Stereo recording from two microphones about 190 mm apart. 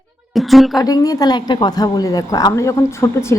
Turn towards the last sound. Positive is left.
turn(degrees=15)  # may be behind; listen again after turning